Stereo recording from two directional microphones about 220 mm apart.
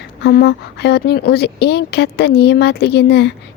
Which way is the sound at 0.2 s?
50° left (ahead or behind).